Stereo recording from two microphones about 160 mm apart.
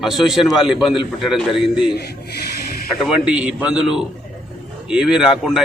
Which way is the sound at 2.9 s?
5° right (ahead or behind).